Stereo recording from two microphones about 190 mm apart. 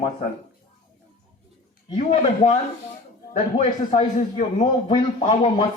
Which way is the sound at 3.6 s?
45° left (ahead or behind).